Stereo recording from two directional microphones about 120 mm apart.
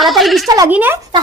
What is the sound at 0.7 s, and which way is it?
Speech, 15° right (ahead or behind).